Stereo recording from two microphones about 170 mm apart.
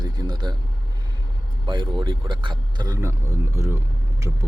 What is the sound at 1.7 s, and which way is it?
A man's voice, 25° right (ahead or behind).